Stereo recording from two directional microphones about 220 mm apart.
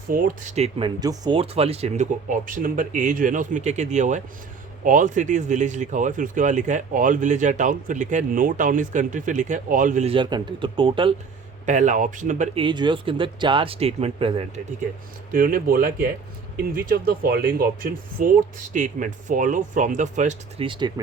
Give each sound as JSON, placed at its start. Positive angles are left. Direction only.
{"t": 0.1, "sound": "speech", "side_deg": -35}
{"t": 11.6, "sound": "speech", "side_deg": -35}
{"t": 12.6, "sound": "speech", "side_deg": -20}
{"t": 15.3, "sound": "speech", "side_deg": -40}